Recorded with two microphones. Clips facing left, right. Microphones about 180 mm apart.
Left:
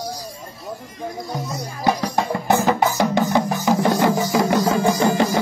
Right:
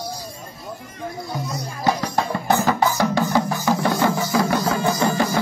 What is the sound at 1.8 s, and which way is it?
Music, 15° left (ahead or behind).